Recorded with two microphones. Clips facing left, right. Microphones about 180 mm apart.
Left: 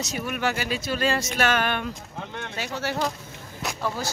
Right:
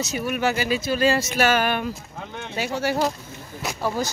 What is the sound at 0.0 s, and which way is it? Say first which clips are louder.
Speech: right 4 dB; 5° right (ahead or behind).